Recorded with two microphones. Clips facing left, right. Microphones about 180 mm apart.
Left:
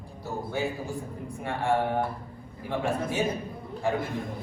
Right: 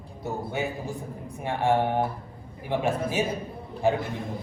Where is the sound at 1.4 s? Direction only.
20° right (ahead or behind).